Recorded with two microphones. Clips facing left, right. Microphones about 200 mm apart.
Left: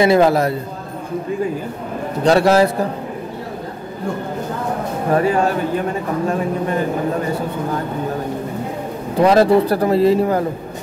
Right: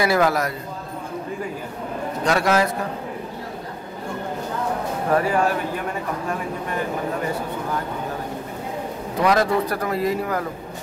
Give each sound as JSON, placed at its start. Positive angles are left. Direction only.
{"t": 0.0, "sound": "speech", "side_deg": 25}
{"t": 2.2, "sound": "a man's voice", "side_deg": 30}
{"t": 5.1, "sound": "speech", "side_deg": 25}
{"t": 9.1, "sound": "speech", "side_deg": 30}